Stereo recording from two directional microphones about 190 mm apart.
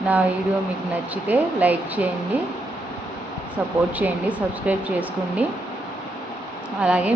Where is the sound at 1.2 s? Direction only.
10° right (ahead or behind).